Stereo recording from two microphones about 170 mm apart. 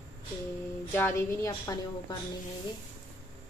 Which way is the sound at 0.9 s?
15° left (ahead or behind).